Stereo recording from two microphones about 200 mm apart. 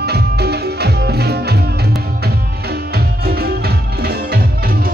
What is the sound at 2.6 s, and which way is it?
Music, 50° right (ahead or behind).